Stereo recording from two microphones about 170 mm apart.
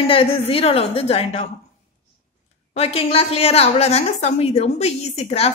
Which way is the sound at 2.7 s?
35° left (ahead or behind).